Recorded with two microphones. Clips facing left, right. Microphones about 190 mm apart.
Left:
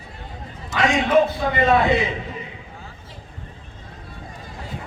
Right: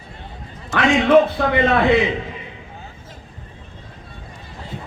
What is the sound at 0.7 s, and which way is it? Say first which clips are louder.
A man's voice: right 4 dB; 60° right (ahead or behind).